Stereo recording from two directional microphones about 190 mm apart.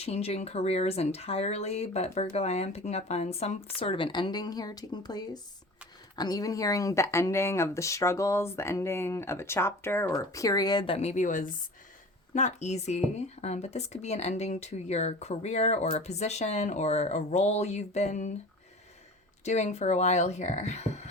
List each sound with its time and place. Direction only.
0.0 s speech: 30° left (ahead or behind)
19.5 s speech: 35° left (ahead or behind)